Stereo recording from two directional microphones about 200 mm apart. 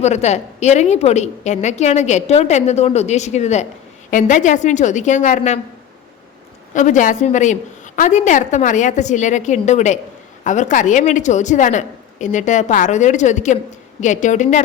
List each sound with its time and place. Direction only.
0.0 s a woman's voice: 35° left (ahead or behind)
6.7 s a woman's voice: 40° left (ahead or behind)